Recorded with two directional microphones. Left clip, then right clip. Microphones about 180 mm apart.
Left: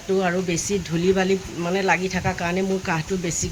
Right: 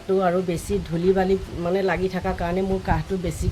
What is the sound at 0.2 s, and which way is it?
Speech, 5° right (ahead or behind).